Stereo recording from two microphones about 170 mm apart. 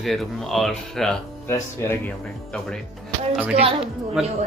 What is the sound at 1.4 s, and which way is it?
Speech, 15° left (ahead or behind).